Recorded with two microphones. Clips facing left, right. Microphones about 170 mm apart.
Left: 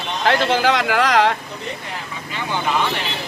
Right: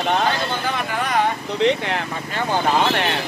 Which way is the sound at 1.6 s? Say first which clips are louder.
Right 12 dB; 90° right.